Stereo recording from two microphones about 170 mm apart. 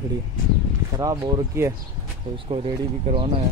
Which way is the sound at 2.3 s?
35° right (ahead or behind).